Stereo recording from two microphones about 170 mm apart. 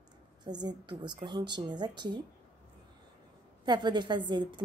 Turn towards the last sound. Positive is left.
turn(degrees=-25)  # may be behind; listen again after turning